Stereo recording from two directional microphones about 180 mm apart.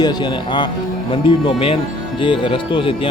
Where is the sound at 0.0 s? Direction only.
25° left (ahead or behind).